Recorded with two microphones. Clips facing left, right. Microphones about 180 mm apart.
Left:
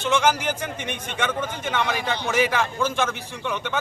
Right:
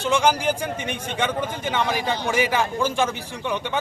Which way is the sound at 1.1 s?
15° right (ahead or behind).